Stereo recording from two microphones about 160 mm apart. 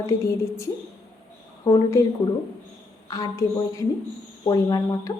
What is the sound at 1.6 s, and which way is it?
Speech, 20° left (ahead or behind).